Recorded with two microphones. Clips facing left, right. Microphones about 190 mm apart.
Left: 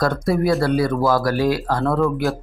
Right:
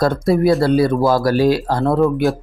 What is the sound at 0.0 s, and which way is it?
Speech, 25° right (ahead or behind).